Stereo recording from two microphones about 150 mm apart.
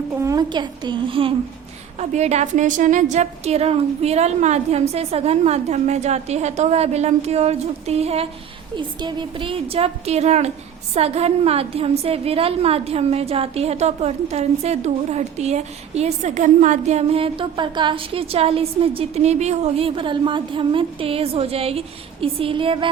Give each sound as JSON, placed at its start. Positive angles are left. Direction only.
{"t": 0.2, "sound": "a woman's voice", "side_deg": -25}
{"t": 2.0, "sound": "a woman's voice", "side_deg": -45}
{"t": 8.7, "sound": "a woman's voice", "side_deg": -30}